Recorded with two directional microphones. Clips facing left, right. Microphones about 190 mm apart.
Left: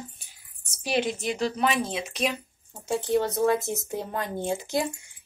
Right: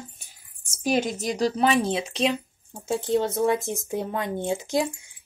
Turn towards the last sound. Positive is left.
turn(degrees=-20)  # may be behind; listen again after turning